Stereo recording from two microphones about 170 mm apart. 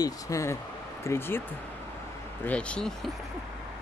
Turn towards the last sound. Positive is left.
turn(degrees=5)  # may be behind; listen again after turning